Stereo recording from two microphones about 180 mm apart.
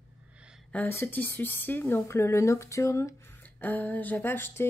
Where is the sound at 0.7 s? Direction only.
10° left (ahead or behind).